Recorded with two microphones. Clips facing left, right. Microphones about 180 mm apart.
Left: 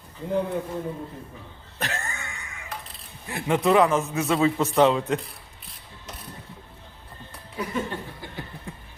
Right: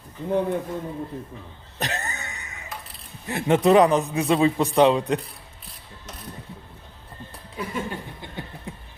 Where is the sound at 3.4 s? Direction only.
20° right (ahead or behind).